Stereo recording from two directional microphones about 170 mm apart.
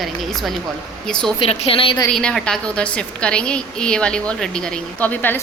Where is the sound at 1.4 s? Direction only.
35° left (ahead or behind).